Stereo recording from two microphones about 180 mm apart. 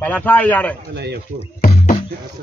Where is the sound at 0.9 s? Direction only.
70° right (ahead or behind).